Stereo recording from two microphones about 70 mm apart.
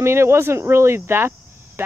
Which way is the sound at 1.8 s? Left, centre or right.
Right.